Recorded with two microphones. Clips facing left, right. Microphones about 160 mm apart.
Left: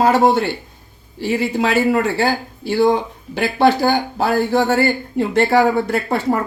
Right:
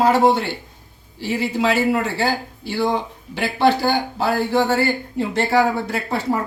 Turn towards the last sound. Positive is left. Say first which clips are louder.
# left 4 dB
turn(degrees=55)  # may be behind; listen again after turning